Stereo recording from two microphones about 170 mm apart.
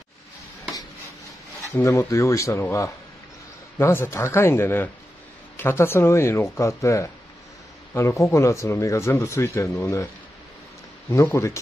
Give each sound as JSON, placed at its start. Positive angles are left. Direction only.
{"t": 1.8, "sound": "speech", "side_deg": 20}
{"t": 11.1, "sound": "speech", "side_deg": 15}